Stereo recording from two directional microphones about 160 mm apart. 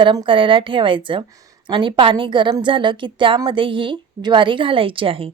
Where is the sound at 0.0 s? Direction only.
30° right (ahead or behind).